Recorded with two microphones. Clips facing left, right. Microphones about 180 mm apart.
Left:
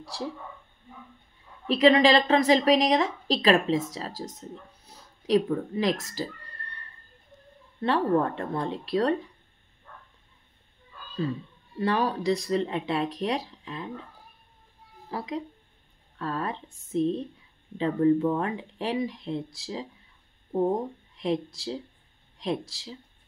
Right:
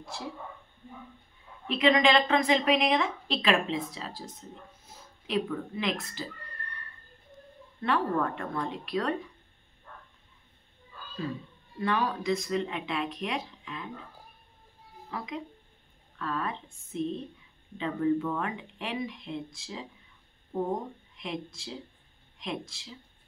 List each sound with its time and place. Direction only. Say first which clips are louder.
1.7 s a woman's voice: left 4 dB; 35° left (ahead or behind)
7.8 s a woman's voice: left 4 dB; 30° left (ahead or behind)
11.8 s a woman's voice: left 4 dB; 35° left (ahead or behind)
15.0 s a woman's voice: left 4 dB; 35° left (ahead or behind)
21.2 s a woman's voice: left 9 dB; 35° left (ahead or behind)